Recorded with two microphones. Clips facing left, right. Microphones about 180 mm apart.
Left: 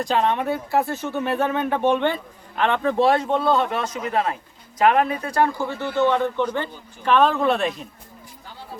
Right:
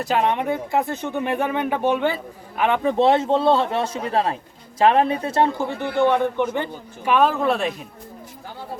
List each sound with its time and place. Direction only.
0.0 s speech: 10° right (ahead or behind)
7.0 s speech: 10° right (ahead or behind)